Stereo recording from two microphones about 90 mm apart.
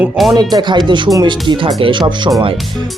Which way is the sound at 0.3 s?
50° right (ahead or behind).